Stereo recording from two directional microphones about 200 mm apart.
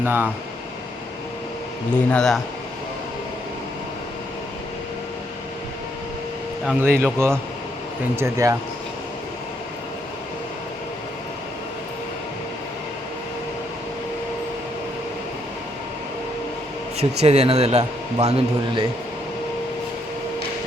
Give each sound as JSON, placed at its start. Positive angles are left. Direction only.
{"t": 0.0, "sound": "a man's voice", "side_deg": -10}
{"t": 2.0, "sound": "a man's voice", "side_deg": 5}
{"t": 6.7, "sound": "a man's voice", "side_deg": -10}
{"t": 17.0, "sound": "a man's voice", "side_deg": -30}